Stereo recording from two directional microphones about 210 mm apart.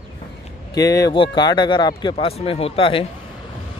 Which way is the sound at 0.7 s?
15° left (ahead or behind).